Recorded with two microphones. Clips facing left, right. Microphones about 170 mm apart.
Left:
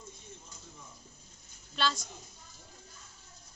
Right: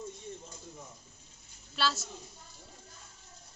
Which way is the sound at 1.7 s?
5° right (ahead or behind).